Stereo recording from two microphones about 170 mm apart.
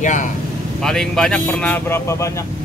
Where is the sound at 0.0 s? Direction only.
45° left (ahead or behind).